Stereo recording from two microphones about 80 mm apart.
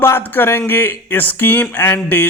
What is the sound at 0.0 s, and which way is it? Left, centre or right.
A man's voice, left.